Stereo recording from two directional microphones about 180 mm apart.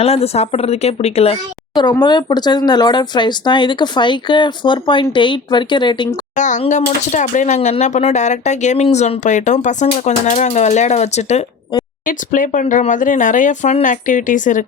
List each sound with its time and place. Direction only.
0.0 s speech: 35° left (ahead or behind)
1.7 s speech: 25° left (ahead or behind)
6.3 s speech: 45° left (ahead or behind)